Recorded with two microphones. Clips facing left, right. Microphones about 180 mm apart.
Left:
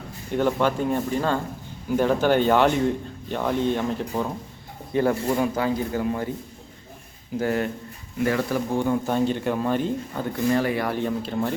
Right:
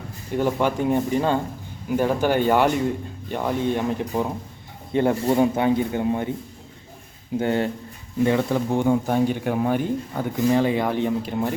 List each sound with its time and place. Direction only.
0.3 s speech: 10° right (ahead or behind)
7.3 s speech: 25° right (ahead or behind)